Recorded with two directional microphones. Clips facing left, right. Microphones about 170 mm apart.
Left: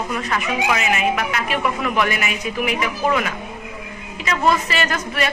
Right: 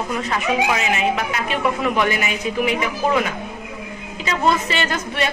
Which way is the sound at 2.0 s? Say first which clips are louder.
Right 1 dB; 30° right (ahead or behind).